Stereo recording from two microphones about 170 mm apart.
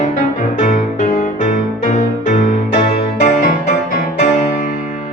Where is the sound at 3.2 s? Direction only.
55° left (ahead or behind).